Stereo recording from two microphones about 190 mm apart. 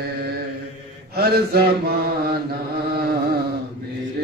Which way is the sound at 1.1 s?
55° right (ahead or behind).